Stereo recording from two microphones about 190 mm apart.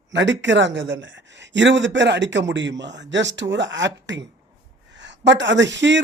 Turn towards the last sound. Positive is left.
turn(degrees=-70)  # may be behind; listen again after turning